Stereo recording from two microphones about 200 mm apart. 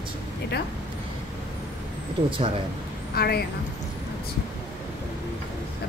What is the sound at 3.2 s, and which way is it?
Speech, 50° left (ahead or behind).